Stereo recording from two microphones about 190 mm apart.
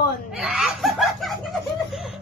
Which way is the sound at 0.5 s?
Centre (ahead or behind).